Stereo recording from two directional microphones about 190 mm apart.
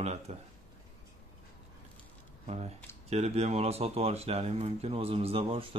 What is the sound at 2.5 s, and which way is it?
Speech, 35° right (ahead or behind).